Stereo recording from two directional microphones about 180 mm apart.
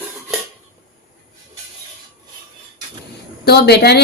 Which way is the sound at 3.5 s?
65° left (ahead or behind).